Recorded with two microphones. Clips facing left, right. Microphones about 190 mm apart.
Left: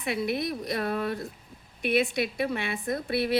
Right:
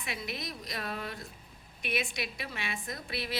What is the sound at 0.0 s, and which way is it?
A woman's voice, 55° left (ahead or behind).